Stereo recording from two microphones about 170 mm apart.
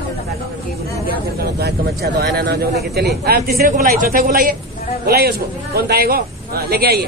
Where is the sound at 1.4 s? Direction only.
65° right (ahead or behind).